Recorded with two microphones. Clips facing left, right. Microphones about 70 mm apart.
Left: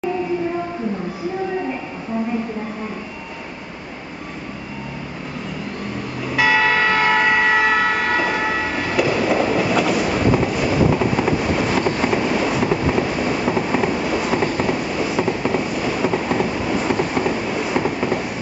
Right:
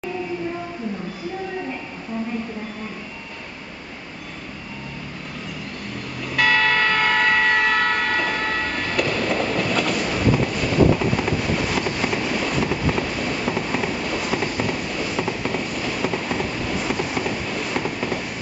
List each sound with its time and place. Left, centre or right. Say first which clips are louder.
6.2 s church bell: left 2 dB; centre